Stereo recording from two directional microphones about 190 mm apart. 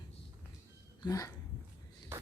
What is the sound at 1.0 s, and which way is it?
Speech, 20° left (ahead or behind).